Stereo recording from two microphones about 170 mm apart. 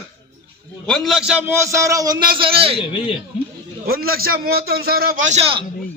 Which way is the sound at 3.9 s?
60° right (ahead or behind).